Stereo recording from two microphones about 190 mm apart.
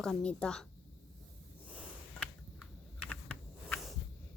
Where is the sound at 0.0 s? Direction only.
5° left (ahead or behind).